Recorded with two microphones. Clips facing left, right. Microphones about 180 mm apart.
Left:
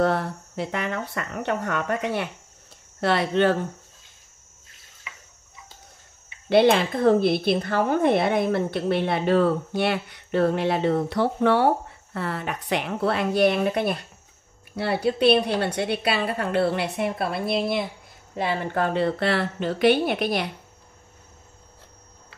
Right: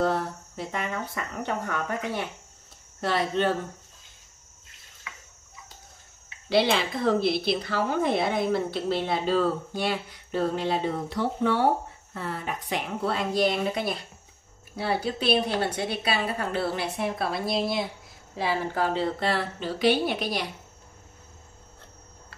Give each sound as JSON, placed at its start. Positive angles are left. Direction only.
{"t": 0.0, "sound": "speech", "side_deg": 65}
{"t": 6.5, "sound": "a woman's voice", "side_deg": 50}